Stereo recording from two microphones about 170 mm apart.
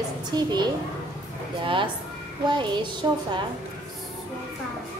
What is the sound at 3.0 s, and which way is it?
Speech, 25° right (ahead or behind).